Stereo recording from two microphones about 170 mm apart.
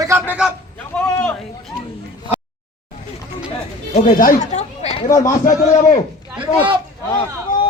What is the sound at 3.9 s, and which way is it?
Speech, 50° left (ahead or behind).